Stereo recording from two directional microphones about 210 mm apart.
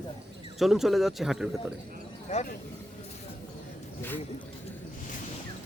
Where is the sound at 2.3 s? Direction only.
35° left (ahead or behind).